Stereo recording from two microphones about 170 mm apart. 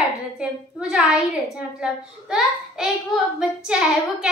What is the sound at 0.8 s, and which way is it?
A child's voice, 5° right (ahead or behind).